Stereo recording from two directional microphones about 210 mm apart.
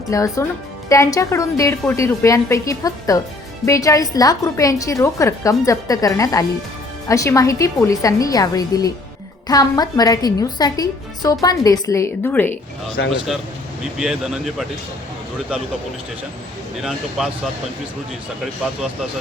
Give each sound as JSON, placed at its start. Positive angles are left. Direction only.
{"t": 0.1, "sound": "a woman's voice", "side_deg": 15}
{"t": 13.0, "sound": "a man's voice", "side_deg": 50}
{"t": 14.0, "sound": "speech", "side_deg": 0}
{"t": 16.8, "sound": "speech", "side_deg": 0}